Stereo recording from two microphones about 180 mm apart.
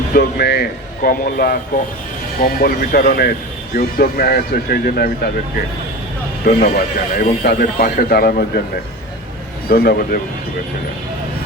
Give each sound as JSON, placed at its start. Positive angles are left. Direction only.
{"t": 0.1, "sound": "speech", "side_deg": 65}
{"t": 6.4, "sound": "speech", "side_deg": 55}
{"t": 9.6, "sound": "speech", "side_deg": 60}